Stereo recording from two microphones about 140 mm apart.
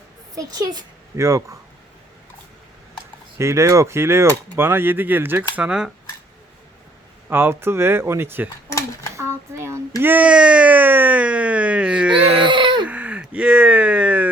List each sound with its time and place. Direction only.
0.3 s a child's voice: 30° right (ahead or behind)
3.3 s speech: 20° right (ahead or behind)
7.3 s speech: 15° right (ahead or behind)
9.1 s a sound: 20° right (ahead or behind)
12.4 s baby cry: 35° right (ahead or behind)
12.9 s a sound: 10° right (ahead or behind)